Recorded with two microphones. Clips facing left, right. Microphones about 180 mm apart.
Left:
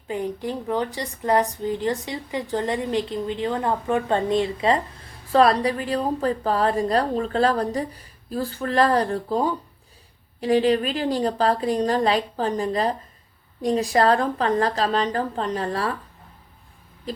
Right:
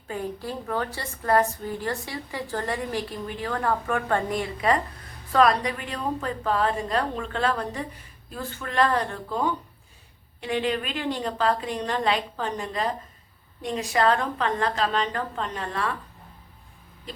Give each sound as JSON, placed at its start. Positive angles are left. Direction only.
{"t": 0.1, "sound": "a woman's voice", "side_deg": 20}